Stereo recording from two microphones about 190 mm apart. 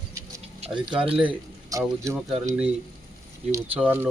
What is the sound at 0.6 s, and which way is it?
Speech, 25° right (ahead or behind).